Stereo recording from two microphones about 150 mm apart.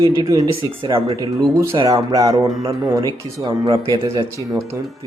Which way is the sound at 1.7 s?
25° right (ahead or behind).